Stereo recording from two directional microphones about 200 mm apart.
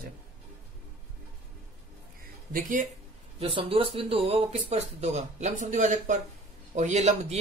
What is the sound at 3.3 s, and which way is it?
Speech, 30° right (ahead or behind).